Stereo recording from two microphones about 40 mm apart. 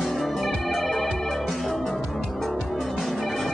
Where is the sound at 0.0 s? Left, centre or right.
Centre.